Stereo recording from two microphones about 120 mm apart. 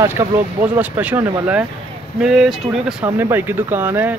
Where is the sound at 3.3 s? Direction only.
20° right (ahead or behind).